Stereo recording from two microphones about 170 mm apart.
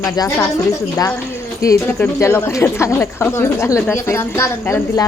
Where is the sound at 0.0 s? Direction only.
20° left (ahead or behind).